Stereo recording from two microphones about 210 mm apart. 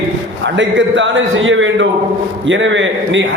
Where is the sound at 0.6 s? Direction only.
65° right (ahead or behind).